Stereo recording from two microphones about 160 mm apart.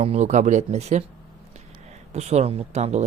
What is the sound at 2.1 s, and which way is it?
Speech, 45° right (ahead or behind).